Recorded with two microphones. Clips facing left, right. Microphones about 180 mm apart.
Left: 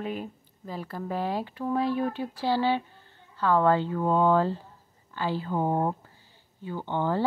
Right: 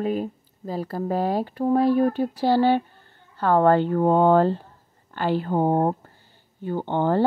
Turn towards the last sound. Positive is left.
turn(degrees=-60)  # may be behind; listen again after turning